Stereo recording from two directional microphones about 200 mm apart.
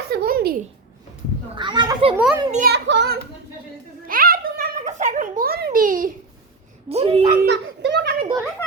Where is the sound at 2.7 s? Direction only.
60° right (ahead or behind).